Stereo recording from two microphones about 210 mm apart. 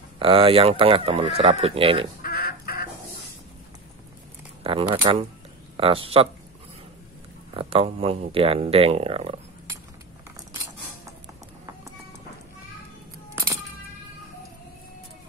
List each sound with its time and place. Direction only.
0.2 s speech: 25° right (ahead or behind)
2.2 s chicken: 45° left (ahead or behind)
4.6 s speech: 25° right (ahead or behind)
7.5 s speech: 25° right (ahead or behind)